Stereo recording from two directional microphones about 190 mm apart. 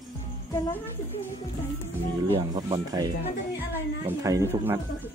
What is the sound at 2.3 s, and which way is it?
Speech, 20° right (ahead or behind).